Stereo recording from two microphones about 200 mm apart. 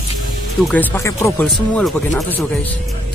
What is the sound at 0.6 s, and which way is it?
Speech, 10° left (ahead or behind).